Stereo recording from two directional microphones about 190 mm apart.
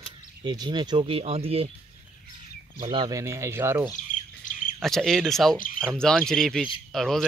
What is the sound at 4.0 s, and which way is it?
Bird, 45° left (ahead or behind).